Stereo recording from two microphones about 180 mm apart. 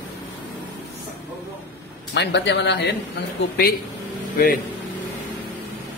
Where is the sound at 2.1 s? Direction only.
75° left (ahead or behind).